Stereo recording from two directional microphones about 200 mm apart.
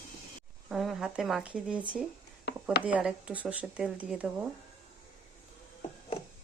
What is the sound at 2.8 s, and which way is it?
Speech, 5° right (ahead or behind).